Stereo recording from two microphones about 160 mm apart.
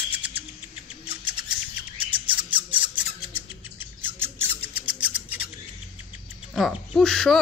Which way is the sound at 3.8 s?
15° right (ahead or behind).